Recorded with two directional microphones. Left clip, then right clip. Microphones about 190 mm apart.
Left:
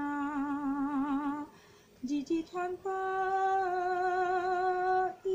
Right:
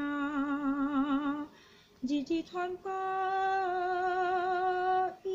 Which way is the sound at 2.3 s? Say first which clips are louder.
Even; 35° right (ahead or behind).